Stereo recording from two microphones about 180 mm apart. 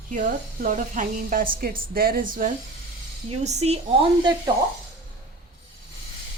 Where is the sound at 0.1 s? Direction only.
45° right (ahead or behind).